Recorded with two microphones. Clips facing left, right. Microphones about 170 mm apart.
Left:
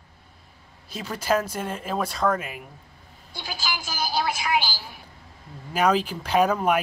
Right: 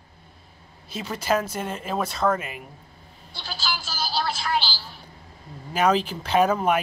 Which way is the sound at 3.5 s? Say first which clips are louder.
Even; 15° left (ahead or behind).